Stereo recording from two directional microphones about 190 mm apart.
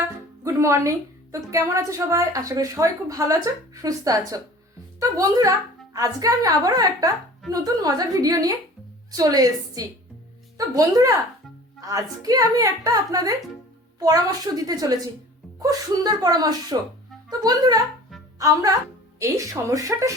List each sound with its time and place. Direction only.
0.4 s a woman's voice: 15° right (ahead or behind)